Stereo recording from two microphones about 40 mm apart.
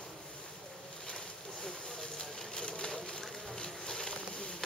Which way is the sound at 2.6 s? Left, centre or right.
Centre.